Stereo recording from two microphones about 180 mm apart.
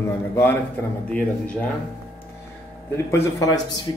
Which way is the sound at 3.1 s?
15° left (ahead or behind).